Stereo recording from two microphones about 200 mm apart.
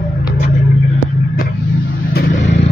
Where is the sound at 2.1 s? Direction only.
45° left (ahead or behind).